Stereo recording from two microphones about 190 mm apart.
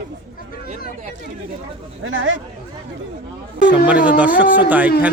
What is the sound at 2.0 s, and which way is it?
Speech, 75° right (ahead or behind).